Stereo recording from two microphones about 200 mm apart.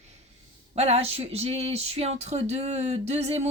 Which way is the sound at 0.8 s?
30° right (ahead or behind).